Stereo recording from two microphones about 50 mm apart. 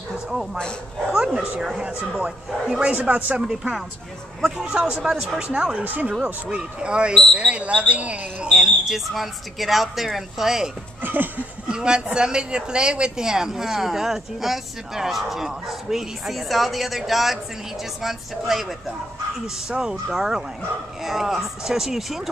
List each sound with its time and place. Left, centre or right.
1.1 s speech: centre; by 3.3 s right
3.4 s speech: centre
4.7 s speech: right
5.0 s speech: centre
5.9 s speech: right
6.2 s speech: right
8.5 s speech: centre
11.0 s a sound: right
11.6 s speech: centre
19.8 s speech: centre